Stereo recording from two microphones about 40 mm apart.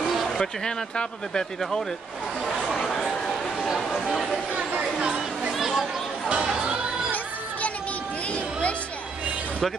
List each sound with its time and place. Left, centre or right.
0.0 s a sound: centre
0.4 s speech: centre
1.6 s speech: centre
2.4 s chatter: centre
3.6 s speech: centre
4.3 s a sound: right
4.8 s chatter: centre